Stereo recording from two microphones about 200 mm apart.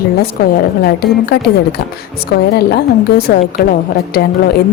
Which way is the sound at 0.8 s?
50° left (ahead or behind).